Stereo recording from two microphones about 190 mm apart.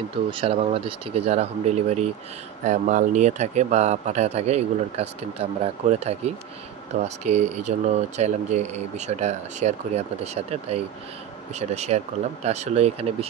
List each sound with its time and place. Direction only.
0.3 s speech: 30° right (ahead or behind)